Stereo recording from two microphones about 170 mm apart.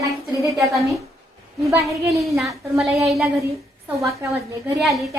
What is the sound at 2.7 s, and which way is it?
Speech, centre (ahead or behind).